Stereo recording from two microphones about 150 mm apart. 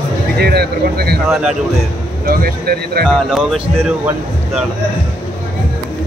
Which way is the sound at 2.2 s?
80° right.